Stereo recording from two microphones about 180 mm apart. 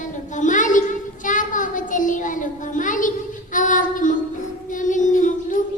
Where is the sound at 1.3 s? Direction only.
45° left (ahead or behind).